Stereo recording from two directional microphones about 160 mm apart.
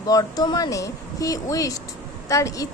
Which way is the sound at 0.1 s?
25° left (ahead or behind).